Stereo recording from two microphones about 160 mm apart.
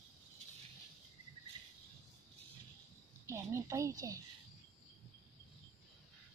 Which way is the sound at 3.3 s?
20° right (ahead or behind).